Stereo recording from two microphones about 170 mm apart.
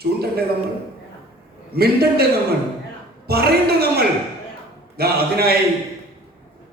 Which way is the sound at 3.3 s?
65° right (ahead or behind).